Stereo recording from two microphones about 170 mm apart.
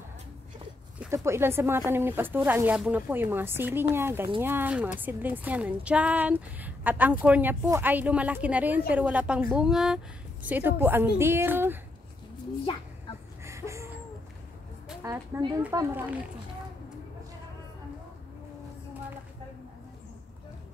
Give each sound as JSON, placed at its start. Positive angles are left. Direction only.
{"t": 1.1, "sound": "a woman's voice", "side_deg": -15}
{"t": 12.7, "sound": "a woman's voice", "side_deg": 30}
{"t": 13.4, "sound": "a sound", "side_deg": -15}
{"t": 15.0, "sound": "a woman's voice", "side_deg": -15}